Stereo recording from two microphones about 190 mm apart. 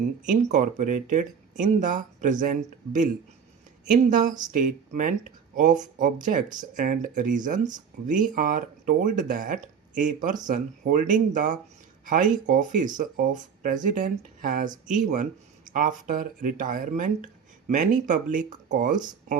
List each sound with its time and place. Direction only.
0.3 s speech: 40° right (ahead or behind)
15.7 s speech: 45° right (ahead or behind)